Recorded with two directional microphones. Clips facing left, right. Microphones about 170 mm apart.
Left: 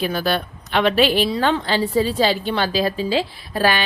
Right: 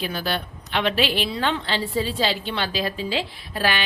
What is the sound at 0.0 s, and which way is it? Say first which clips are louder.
A woman's voice: left 6 dB; 45° left (ahead or behind).